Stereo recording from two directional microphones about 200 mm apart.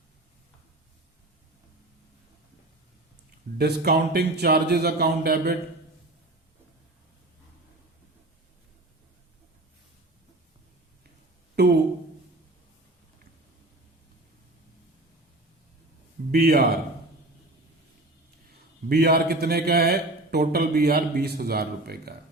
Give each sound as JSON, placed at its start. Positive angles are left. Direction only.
{"t": 3.6, "sound": "a man's voice", "side_deg": -55}
{"t": 11.6, "sound": "a sound", "side_deg": -55}
{"t": 16.3, "sound": "a man's voice", "side_deg": -50}
{"t": 18.9, "sound": "a man's voice", "side_deg": -50}